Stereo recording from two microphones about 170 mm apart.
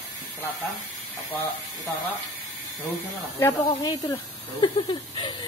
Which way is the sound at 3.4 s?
20° left (ahead or behind).